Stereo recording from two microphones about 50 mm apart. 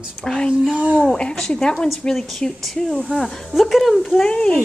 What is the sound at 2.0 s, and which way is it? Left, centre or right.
Speech, centre.